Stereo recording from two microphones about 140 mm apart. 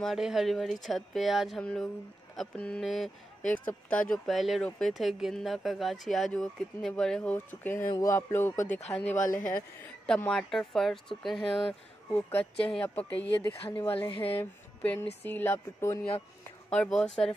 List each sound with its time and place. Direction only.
0.0 s speech: centre (ahead or behind); by 8.6 s 15° left (ahead or behind)
9.1 s speech: 65° left (ahead or behind)
9.8 s speech: 10° left (ahead or behind)
12.1 s a woman's voice: 10° left (ahead or behind)
16.7 s speech: 5° left (ahead or behind)